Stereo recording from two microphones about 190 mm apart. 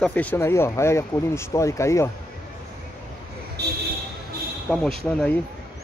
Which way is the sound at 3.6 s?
60° right (ahead or behind).